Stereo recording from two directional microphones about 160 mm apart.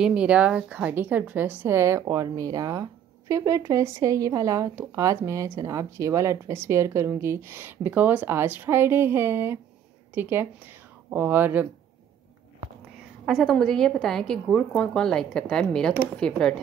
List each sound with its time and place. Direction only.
0.0 s a woman's voice: 5° right (ahead or behind)
13.2 s a woman's voice: centre (ahead or behind)